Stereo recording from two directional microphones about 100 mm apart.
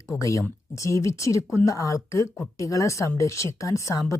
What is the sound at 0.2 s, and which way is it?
Speech, 30° left (ahead or behind).